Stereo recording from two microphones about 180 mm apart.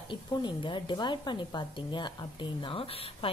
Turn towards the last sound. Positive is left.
turn(degrees=30)  # may be behind; listen again after turning